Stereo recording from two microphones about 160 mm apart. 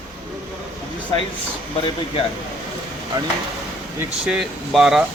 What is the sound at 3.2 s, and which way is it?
Speech, 20° right (ahead or behind).